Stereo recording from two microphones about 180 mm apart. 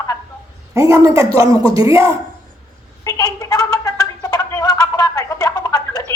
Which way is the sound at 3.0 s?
20° left (ahead or behind).